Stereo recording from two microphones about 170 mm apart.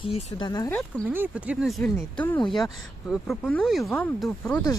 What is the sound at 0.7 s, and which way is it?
Speech, 10° left (ahead or behind).